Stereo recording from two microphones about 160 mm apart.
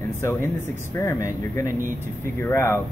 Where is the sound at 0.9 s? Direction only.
20° left (ahead or behind).